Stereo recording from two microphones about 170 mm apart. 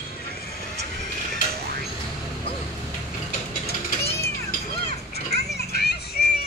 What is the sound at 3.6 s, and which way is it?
Music, 35° left (ahead or behind).